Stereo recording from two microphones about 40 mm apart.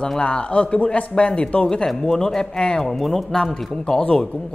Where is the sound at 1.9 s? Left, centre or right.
Centre.